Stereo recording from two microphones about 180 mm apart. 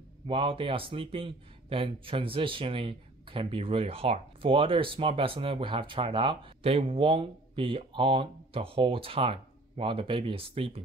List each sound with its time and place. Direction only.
0.3 s speech: 30° right (ahead or behind)